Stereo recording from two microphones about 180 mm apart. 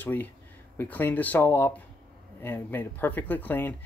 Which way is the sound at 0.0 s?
10° left (ahead or behind).